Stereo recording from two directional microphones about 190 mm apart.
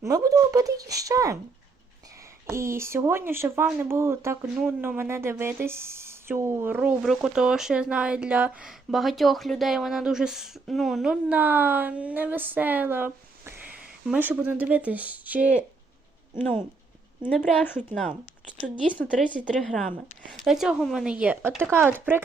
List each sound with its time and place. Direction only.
0.0 s speech: 15° right (ahead or behind)
2.5 s speech: 15° right (ahead or behind)
17.2 s speech: 10° left (ahead or behind); by 22.2 s 10° right (ahead or behind)